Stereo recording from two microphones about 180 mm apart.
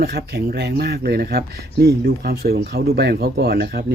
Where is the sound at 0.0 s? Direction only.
60° right (ahead or behind).